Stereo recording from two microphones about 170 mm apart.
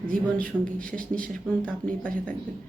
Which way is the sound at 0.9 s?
55° right (ahead or behind).